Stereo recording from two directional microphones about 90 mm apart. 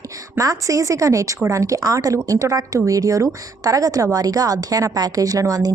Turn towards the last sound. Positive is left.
turn(degrees=-40)  # may be behind; listen again after turning